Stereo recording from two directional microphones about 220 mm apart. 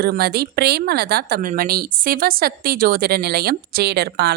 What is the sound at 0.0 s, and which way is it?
A woman's voice, 45° right (ahead or behind).